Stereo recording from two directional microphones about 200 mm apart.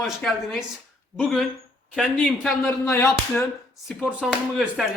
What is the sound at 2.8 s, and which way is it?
Speech, 15° left (ahead or behind).